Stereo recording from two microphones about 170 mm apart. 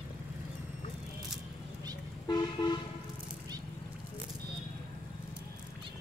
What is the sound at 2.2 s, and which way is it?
Toot, 25° left (ahead or behind).